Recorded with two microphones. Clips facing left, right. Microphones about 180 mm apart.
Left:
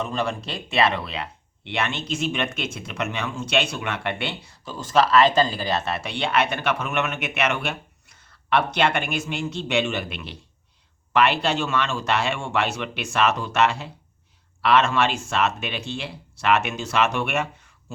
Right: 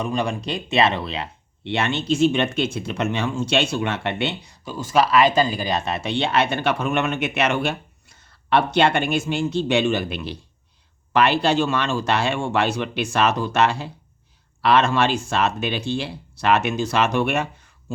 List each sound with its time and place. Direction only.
0.0 s speech: 15° right (ahead or behind); by 17.9 s 35° right (ahead or behind)